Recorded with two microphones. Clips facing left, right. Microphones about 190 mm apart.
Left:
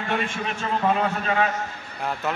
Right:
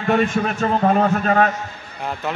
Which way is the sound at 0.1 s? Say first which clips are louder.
Right 10 dB; 45° right (ahead or behind).